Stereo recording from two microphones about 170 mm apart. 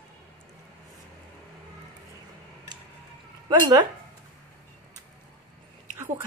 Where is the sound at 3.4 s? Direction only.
25° right (ahead or behind).